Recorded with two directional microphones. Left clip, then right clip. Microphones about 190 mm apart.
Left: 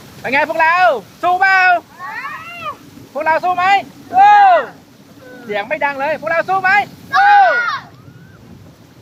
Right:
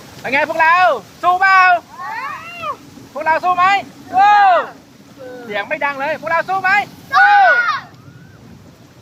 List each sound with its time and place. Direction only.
0.2 s speech: 5° left (ahead or behind)
2.0 s cat: 15° right (ahead or behind)
3.2 s speech: 10° left (ahead or behind)
7.5 s a sound: 5° right (ahead or behind)